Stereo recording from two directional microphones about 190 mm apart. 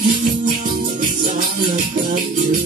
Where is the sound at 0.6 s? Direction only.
45° right (ahead or behind).